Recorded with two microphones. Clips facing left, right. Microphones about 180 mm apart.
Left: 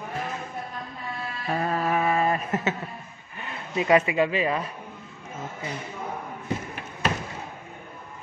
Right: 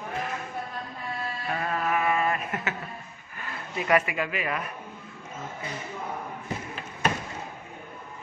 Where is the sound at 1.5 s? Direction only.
35° left (ahead or behind).